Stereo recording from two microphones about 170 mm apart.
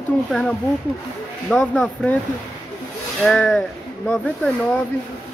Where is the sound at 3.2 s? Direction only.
5° left (ahead or behind).